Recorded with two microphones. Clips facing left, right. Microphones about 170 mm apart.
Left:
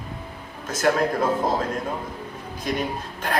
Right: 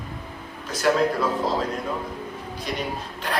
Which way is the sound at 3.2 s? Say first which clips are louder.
Left 2 dB; 45° left (ahead or behind).